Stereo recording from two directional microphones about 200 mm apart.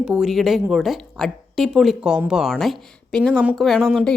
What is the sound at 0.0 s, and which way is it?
Speech, 5° right (ahead or behind).